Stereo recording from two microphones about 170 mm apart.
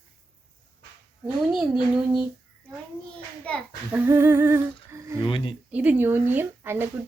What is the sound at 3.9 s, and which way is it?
Speech, 15° right (ahead or behind).